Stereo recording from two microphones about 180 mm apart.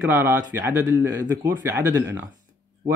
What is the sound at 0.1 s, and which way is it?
Speech, 15° right (ahead or behind).